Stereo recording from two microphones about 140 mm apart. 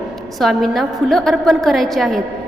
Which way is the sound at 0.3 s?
Centre (ahead or behind).